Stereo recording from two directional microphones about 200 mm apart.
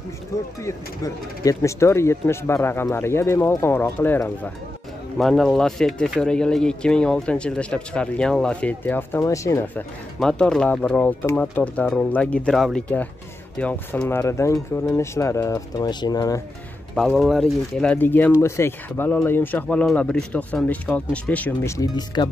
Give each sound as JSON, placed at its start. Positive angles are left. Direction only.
{"t": 0.7, "sound": "speech", "side_deg": 15}
{"t": 17.1, "sound": "speech", "side_deg": 0}